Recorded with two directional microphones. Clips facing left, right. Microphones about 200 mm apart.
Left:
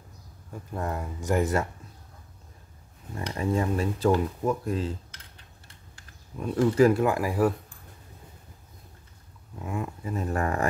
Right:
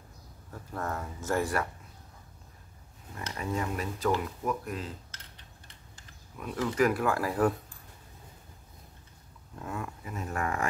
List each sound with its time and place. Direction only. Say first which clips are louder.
0.5 s speech: left 3 dB; 15° left (ahead or behind)
3.3 s speech: left 6 dB; 30° left (ahead or behind)
6.3 s speech: left 8 dB; 30° left (ahead or behind); by 7.5 s 10° left (ahead or behind)
9.6 s speech: left 5 dB; 15° left (ahead or behind)
10.0 s speech: left 6 dB; 35° left (ahead or behind)